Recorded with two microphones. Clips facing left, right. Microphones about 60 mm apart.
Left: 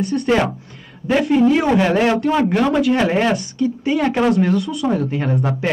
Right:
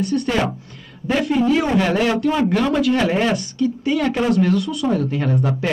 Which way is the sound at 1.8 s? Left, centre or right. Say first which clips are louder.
Left 2 dB; centre.